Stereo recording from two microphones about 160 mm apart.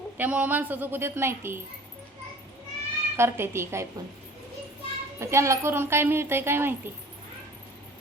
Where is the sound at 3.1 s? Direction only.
15° right (ahead or behind).